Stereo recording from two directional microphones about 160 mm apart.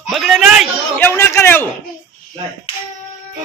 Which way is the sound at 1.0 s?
15° left (ahead or behind).